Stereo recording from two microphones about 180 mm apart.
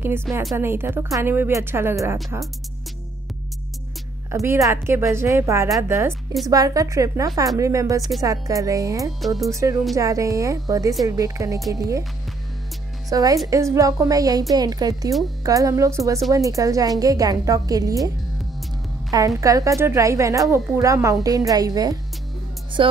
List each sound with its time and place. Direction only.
0.6 s a woman's voice: 15° right (ahead or behind)
4.3 s a woman's voice: 15° right (ahead or behind)
9.2 s speech: centre (ahead or behind)
9.5 s a woman's voice: 15° right (ahead or behind)
13.1 s a woman's voice: 20° right (ahead or behind)